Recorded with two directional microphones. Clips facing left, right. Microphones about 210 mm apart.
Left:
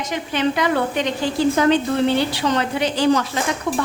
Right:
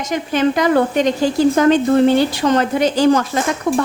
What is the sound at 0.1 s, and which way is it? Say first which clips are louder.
A woman's voice: right 5 dB; 45° right (ahead or behind).